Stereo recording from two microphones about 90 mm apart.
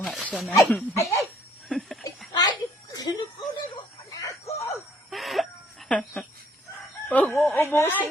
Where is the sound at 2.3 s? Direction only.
45° left (ahead or behind).